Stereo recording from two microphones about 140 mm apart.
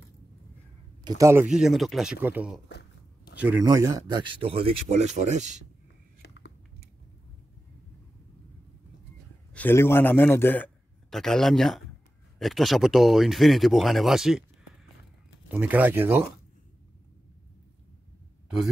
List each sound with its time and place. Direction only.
1.0 s speech: 25° right (ahead or behind)
1.4 s speech: 5° right (ahead or behind)
2.2 s a man's voice: 10° right (ahead or behind)
3.6 s speech: 25° right (ahead or behind); by 4.7 s 40° right (ahead or behind)
4.8 s speech: 55° right (ahead or behind)
9.5 s a man's voice: 15° left (ahead or behind)
11.1 s speech: 5° left (ahead or behind)
15.4 s speech: 10° right (ahead or behind)